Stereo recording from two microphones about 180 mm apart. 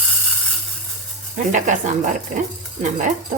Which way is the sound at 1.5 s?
45° right (ahead or behind).